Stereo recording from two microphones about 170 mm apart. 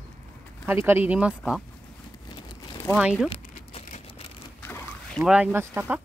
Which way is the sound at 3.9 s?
45° left (ahead or behind).